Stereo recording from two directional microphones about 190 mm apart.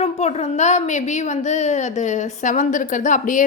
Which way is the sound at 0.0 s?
35° left (ahead or behind).